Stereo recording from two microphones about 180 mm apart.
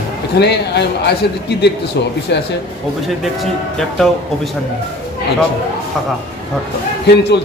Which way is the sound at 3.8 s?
Centre (ahead or behind).